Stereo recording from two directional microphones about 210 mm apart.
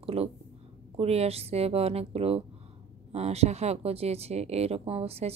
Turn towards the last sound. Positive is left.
turn(degrees=-30)  # may be behind; listen again after turning